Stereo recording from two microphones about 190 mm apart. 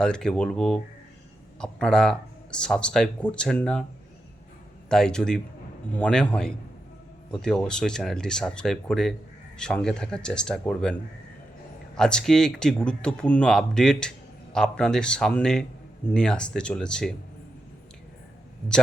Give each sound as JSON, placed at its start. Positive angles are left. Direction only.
{"t": 0.0, "sound": "speech", "side_deg": 5}
{"t": 4.9, "sound": "speech", "side_deg": 5}
{"t": 11.9, "sound": "speech", "side_deg": 5}